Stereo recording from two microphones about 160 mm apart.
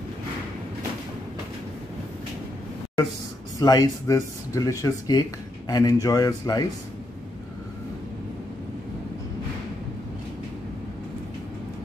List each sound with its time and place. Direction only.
3.5 s speech: 25° left (ahead or behind)